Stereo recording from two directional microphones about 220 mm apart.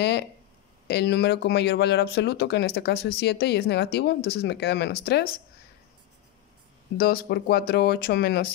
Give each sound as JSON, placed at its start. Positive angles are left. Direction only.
{"t": 0.0, "sound": "speech", "side_deg": 50}
{"t": 7.0, "sound": "speech", "side_deg": 45}